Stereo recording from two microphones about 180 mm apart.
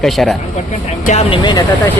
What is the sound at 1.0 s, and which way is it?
Speech, 35° left (ahead or behind).